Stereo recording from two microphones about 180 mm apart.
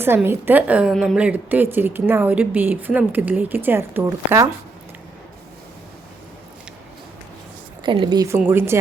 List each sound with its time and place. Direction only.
0.0 s a woman's voice: 15° right (ahead or behind)
7.9 s a woman's voice: 25° right (ahead or behind)